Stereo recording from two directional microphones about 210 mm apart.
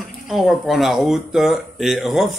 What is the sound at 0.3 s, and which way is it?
Speech, centre (ahead or behind).